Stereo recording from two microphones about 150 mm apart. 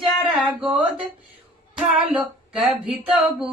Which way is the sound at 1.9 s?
5° right (ahead or behind).